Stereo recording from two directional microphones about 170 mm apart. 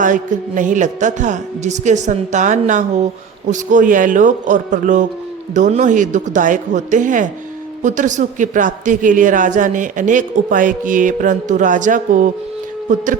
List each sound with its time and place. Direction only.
0.0 s speech: 50° right (ahead or behind)